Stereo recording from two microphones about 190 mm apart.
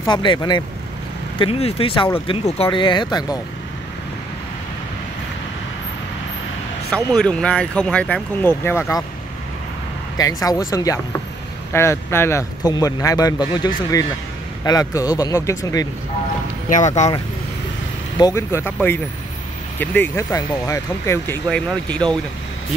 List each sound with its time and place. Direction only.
0.0 s a man's voice: 25° left (ahead or behind)
6.9 s speech: 5° left (ahead or behind)
10.1 s a man's voice: 20° left (ahead or behind)
16.6 s speech: 40° left (ahead or behind)
18.1 s speech: 15° left (ahead or behind)